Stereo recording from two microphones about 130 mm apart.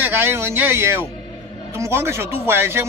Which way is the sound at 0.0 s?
15° right (ahead or behind).